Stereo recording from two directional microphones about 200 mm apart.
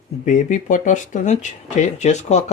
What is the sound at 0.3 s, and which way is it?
Speech, 40° left (ahead or behind).